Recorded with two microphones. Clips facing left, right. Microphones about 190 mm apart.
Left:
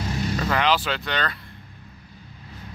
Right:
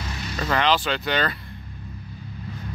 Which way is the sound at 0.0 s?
45° left (ahead or behind).